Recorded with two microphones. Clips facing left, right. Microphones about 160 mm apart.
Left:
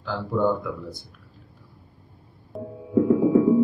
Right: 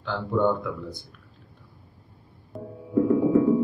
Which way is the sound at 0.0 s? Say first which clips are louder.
Even; 5° left (ahead or behind).